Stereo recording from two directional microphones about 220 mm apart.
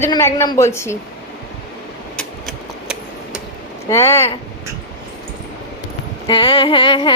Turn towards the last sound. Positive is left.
turn(degrees=20)  # may be behind; listen again after turning